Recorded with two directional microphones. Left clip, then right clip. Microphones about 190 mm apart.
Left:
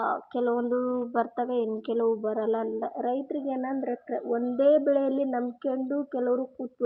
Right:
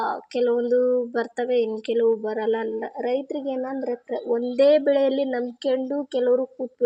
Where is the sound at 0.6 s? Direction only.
40° right (ahead or behind).